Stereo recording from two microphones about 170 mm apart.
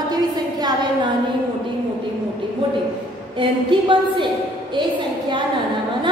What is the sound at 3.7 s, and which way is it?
Speech, 30° right (ahead or behind).